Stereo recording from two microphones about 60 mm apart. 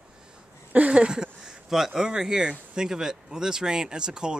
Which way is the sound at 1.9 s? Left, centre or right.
Centre.